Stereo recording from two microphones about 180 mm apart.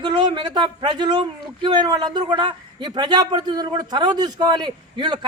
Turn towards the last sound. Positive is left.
turn(degrees=-25)  # may be behind; listen again after turning